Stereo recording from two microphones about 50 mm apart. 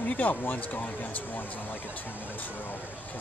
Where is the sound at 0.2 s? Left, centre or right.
Left.